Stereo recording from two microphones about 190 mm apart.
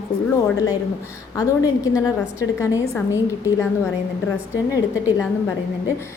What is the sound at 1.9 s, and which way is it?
A woman's voice, 15° left (ahead or behind).